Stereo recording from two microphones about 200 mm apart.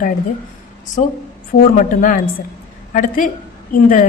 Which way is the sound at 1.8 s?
40° left (ahead or behind).